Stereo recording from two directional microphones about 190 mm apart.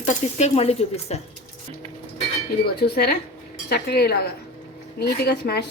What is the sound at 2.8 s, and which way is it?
A woman's voice, 60° left (ahead or behind).